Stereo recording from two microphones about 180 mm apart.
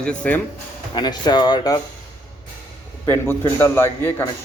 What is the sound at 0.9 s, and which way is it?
Speech, 25° left (ahead or behind).